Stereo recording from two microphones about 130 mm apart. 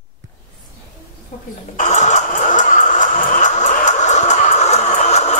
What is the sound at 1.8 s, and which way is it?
Vehicle, 65° left (ahead or behind).